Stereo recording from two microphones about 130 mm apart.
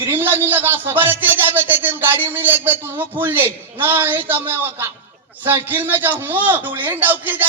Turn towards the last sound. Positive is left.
turn(degrees=-15)  # may be behind; listen again after turning